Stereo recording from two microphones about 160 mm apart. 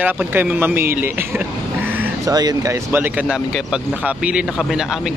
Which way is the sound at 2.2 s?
25° right (ahead or behind).